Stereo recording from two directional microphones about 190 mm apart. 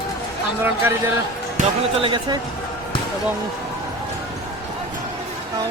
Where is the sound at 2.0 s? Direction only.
25° right (ahead or behind).